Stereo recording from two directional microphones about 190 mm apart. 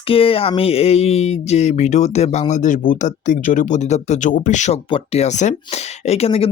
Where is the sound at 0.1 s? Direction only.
30° left (ahead or behind).